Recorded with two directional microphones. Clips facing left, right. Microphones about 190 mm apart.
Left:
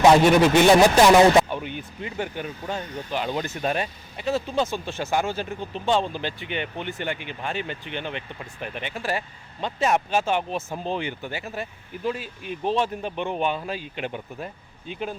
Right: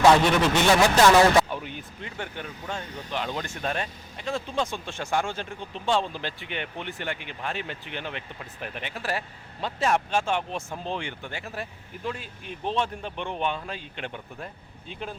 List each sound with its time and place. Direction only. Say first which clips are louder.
0.0 s a man's voice: left 4 dB; 10° left (ahead or behind)
1.5 s speech: left 4 dB; centre (ahead or behind)